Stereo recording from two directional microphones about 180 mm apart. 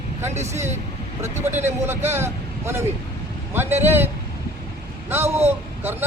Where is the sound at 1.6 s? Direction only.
10° right (ahead or behind).